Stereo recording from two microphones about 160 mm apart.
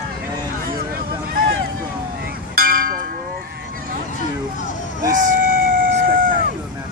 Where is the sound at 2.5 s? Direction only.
65° right (ahead or behind).